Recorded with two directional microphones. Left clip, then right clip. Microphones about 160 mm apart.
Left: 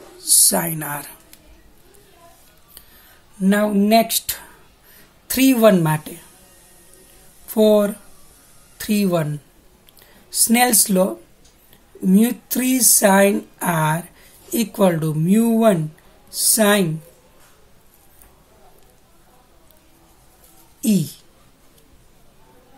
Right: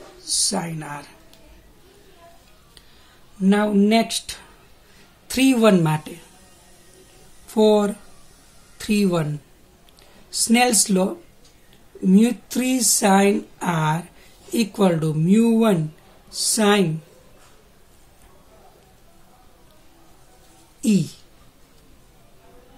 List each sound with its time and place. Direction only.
0.2 s speech: 65° left (ahead or behind)
3.3 s speech: 40° left (ahead or behind)
5.3 s speech: 35° left (ahead or behind)
7.4 s speech: 30° left (ahead or behind)
10.3 s speech: 35° left (ahead or behind)
20.8 s speech: 35° left (ahead or behind)